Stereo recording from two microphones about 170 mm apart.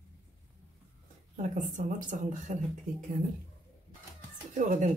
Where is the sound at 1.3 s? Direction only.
50° right (ahead or behind).